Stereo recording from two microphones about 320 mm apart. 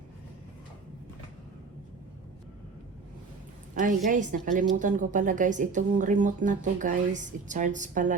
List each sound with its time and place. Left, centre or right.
3.8 s a woman's voice: right